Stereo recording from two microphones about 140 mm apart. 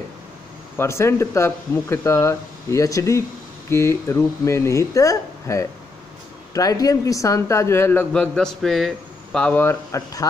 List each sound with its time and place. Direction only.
0.7 s speech: 20° left (ahead or behind)
8.1 s a man's voice: 5° left (ahead or behind); by 10.2 s 20° left (ahead or behind)